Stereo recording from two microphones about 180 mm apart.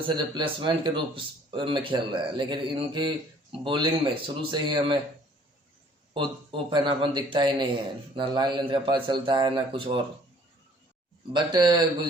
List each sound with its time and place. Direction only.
0.0 s a man's voice: 25° right (ahead or behind)
6.1 s a man's voice: 25° right (ahead or behind)
11.3 s a man's voice: 25° right (ahead or behind)